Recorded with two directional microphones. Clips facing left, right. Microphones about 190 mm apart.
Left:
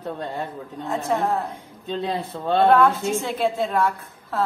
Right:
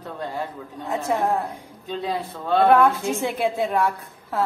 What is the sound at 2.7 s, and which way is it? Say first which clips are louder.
A woman's voice: even; 15° right (ahead or behind).